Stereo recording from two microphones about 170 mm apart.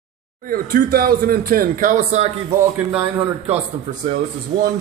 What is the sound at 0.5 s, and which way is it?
Speech, 60° right (ahead or behind).